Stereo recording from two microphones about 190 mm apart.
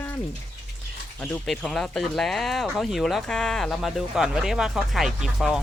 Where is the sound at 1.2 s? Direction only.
5° left (ahead or behind).